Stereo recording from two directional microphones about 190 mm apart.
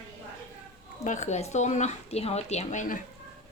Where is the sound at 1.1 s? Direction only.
40° left (ahead or behind).